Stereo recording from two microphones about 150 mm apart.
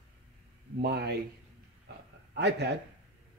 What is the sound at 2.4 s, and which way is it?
Speech, 90° right.